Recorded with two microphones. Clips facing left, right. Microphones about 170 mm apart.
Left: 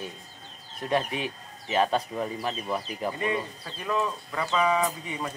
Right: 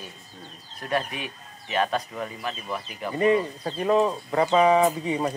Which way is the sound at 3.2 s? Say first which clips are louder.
Right 8 dB; 35° right (ahead or behind).